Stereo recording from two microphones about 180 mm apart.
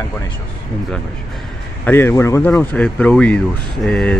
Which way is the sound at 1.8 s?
10° left (ahead or behind).